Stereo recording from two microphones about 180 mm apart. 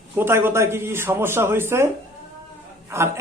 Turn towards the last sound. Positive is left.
turn(degrees=-15)  # may be behind; listen again after turning